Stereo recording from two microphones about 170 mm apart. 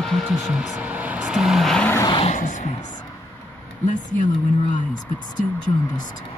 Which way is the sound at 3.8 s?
50° left (ahead or behind).